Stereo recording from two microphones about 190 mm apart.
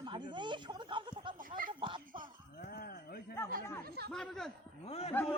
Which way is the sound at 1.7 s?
25° right (ahead or behind).